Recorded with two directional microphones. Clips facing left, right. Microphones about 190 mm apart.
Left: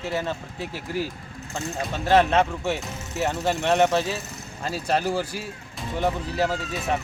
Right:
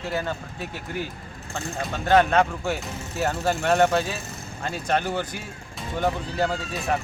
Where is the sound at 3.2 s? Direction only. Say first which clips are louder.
Even; centre (ahead or behind).